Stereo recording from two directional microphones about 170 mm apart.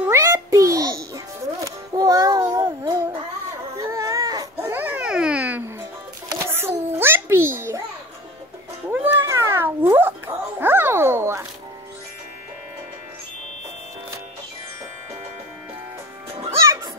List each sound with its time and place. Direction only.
0.0 s music: 15° right (ahead or behind)
2.0 s child singing: 20° right (ahead or behind)
3.8 s baby cry: 20° right (ahead or behind)
4.6 s a sound: 10° right (ahead or behind)
8.9 s cat: 15° right (ahead or behind)